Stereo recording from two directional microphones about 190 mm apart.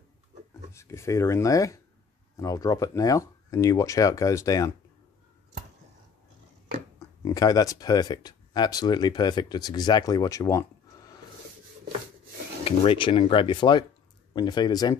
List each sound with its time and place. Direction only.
0.7 s speech: 15° left (ahead or behind)
7.0 s speech: 20° left (ahead or behind)
12.6 s speech: 30° left (ahead or behind)